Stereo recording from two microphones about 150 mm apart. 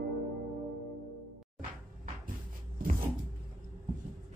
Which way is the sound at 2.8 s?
70° right (ahead or behind).